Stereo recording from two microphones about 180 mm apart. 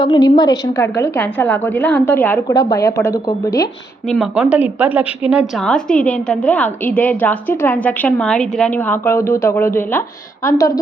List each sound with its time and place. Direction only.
0.0 s a woman's voice: 20° left (ahead or behind)
4.0 s a woman's voice: centre (ahead or behind)